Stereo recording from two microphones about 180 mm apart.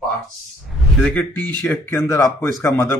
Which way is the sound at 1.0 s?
10° left (ahead or behind).